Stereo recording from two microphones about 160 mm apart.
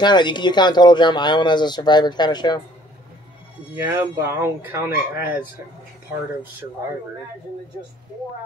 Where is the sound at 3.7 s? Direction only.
15° right (ahead or behind).